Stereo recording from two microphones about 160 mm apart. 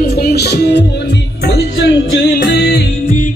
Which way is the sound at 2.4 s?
80° left.